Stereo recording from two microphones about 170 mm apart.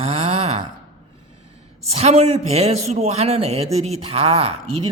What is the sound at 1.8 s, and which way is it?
A woman's voice, 40° right (ahead or behind).